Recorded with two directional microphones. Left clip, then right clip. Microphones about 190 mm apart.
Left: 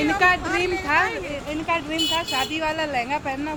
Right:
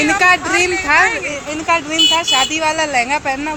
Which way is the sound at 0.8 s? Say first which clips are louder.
Right 8 dB; 25° right (ahead or behind).